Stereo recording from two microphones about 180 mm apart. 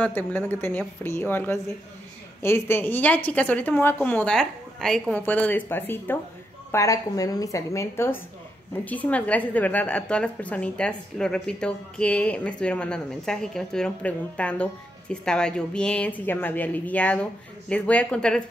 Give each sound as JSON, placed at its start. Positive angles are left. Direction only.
{"t": 0.0, "sound": "a woman's voice", "side_deg": 10}